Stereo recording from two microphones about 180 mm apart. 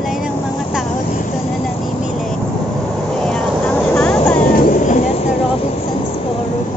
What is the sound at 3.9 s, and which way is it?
Vehicle, 10° left (ahead or behind).